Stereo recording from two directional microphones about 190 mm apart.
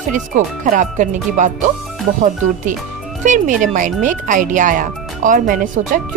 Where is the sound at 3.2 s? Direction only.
40° right (ahead or behind).